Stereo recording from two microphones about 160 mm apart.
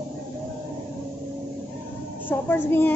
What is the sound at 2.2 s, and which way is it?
Speech, 10° left (ahead or behind).